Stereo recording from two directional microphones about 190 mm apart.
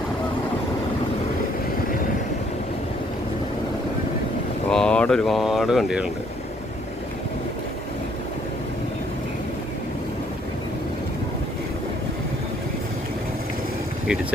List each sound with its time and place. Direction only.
4.7 s mantra: 5° left (ahead or behind)